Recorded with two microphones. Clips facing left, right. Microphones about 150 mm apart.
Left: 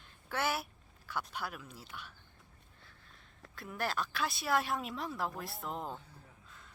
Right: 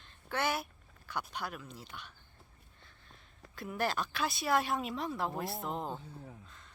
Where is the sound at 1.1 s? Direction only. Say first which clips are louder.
Right 1 dB; 5° left (ahead or behind).